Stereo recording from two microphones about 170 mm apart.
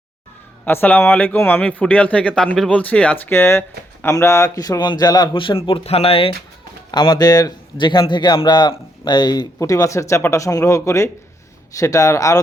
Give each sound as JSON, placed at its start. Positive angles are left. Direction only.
{"t": 0.6, "sound": "speech", "side_deg": 10}